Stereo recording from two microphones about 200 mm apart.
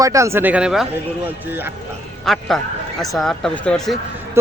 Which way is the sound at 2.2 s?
Centre (ahead or behind).